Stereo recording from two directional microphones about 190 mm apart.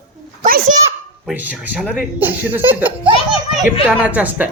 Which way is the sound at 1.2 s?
10° right (ahead or behind).